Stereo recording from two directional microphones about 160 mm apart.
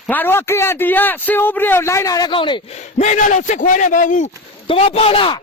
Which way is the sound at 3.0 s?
50° left (ahead or behind).